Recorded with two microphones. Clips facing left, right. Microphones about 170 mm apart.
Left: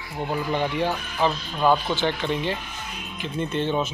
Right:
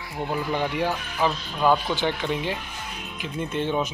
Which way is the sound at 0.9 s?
15° left (ahead or behind).